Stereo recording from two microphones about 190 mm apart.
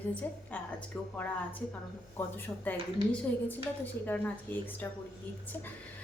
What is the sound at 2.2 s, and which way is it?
A woman's voice, 10° left (ahead or behind).